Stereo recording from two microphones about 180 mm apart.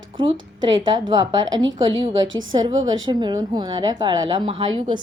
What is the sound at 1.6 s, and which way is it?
Speech, 90° right.